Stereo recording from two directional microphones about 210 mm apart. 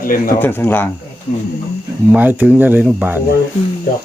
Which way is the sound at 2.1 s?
10° right (ahead or behind).